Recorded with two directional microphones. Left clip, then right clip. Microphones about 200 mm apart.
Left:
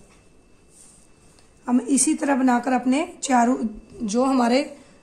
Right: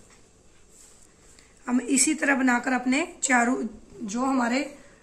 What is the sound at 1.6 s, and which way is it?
A woman's voice, 30° left (ahead or behind).